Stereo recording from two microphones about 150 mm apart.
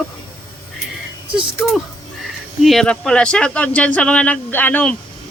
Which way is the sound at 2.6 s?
Centre (ahead or behind).